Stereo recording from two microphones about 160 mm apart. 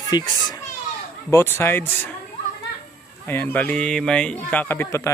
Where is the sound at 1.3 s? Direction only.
15° left (ahead or behind).